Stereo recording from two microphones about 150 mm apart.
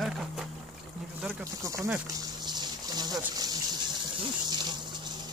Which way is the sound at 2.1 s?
25° right (ahead or behind).